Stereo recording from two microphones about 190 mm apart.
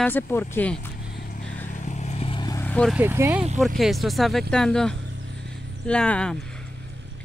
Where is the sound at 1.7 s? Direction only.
40° left (ahead or behind); by 2.7 s 20° left (ahead or behind).